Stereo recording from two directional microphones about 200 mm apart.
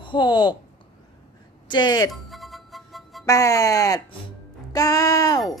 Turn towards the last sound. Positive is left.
turn(degrees=20)  # may be behind; listen again after turning